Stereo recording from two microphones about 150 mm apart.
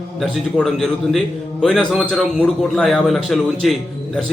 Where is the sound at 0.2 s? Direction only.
5° left (ahead or behind).